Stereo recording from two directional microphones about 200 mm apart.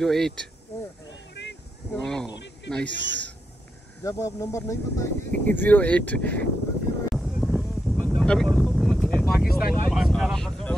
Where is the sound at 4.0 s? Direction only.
15° left (ahead or behind).